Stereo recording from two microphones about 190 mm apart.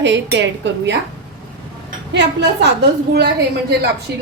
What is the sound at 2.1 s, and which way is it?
Speech, 65° right (ahead or behind).